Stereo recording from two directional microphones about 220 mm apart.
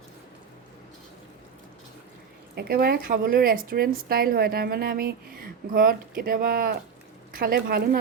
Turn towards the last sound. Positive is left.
turn(degrees=-45)  # may be behind; listen again after turning